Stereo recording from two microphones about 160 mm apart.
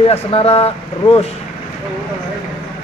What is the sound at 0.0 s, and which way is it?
Speech, 35° left (ahead or behind).